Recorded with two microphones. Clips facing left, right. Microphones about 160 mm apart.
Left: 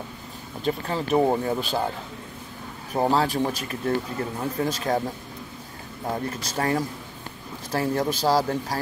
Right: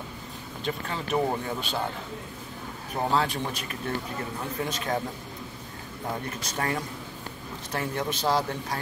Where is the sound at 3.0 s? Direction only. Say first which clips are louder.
Left 5 dB; 35° left (ahead or behind).